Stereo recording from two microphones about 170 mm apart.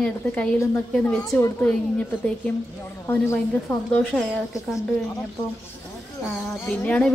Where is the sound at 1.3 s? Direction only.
20° left (ahead or behind).